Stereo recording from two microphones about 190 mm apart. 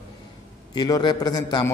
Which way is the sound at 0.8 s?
20° left (ahead or behind).